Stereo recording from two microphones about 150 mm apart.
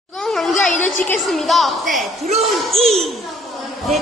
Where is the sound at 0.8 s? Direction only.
10° left (ahead or behind).